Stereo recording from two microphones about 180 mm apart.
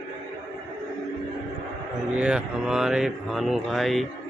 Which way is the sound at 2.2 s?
5° right (ahead or behind).